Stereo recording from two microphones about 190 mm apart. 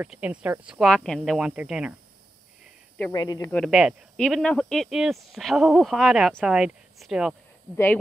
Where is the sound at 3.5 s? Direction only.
Centre (ahead or behind).